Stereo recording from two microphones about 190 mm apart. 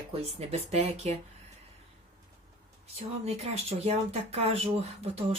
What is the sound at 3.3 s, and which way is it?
Speech, 30° right (ahead or behind).